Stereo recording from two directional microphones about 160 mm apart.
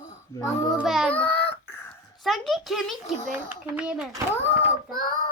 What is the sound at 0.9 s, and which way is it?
Child singing, centre (ahead or behind).